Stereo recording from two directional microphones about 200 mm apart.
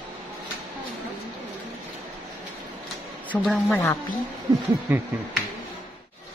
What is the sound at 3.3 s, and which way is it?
Speech, centre (ahead or behind).